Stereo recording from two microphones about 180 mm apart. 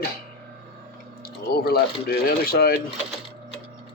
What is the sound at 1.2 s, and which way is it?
Speech, 55° left (ahead or behind).